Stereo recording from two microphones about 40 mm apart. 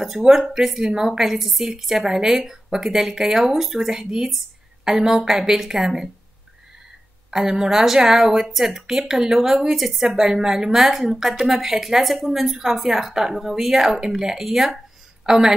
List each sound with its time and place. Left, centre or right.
0.3 s a woman's voice: centre
7.2 s a woman's voice: centre